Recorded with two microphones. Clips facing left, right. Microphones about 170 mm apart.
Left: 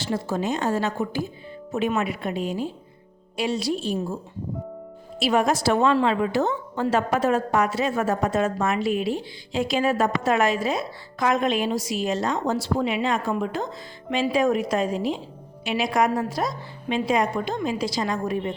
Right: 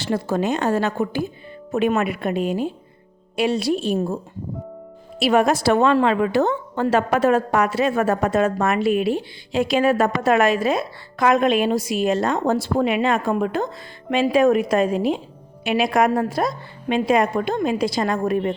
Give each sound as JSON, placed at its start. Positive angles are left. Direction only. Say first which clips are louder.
{"t": 0.0, "sound": "a woman's voice", "louder": "right 4 dB", "side_deg": -60}
{"t": 5.2, "sound": "a woman's voice", "louder": "right 4 dB", "side_deg": -60}